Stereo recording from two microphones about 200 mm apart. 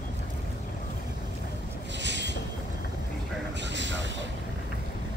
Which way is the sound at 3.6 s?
65° right (ahead or behind).